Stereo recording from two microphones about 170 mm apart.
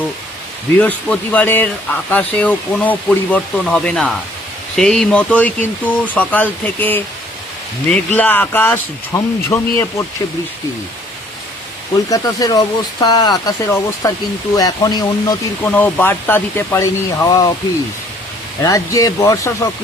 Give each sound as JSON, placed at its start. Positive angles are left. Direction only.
{"t": 0.8, "sound": "speech", "side_deg": 10}
{"t": 12.0, "sound": "speech", "side_deg": 20}
{"t": 15.6, "sound": "speech", "side_deg": 10}
{"t": 18.6, "sound": "speech", "side_deg": 20}